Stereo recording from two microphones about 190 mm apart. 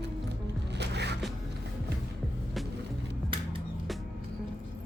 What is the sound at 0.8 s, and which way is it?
Music, 65° right (ahead or behind).